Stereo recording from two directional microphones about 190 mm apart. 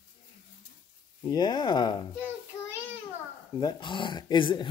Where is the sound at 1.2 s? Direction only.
25° left (ahead or behind).